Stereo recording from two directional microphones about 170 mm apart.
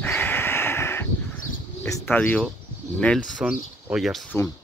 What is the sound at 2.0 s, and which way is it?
Speech, 10° left (ahead or behind).